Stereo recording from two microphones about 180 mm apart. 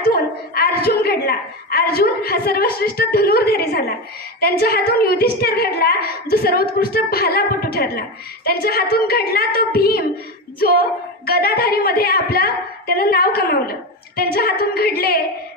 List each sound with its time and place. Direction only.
0.0 s a woman's voice: 55° left (ahead or behind)